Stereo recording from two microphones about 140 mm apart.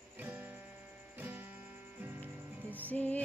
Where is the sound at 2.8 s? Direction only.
10° left (ahead or behind).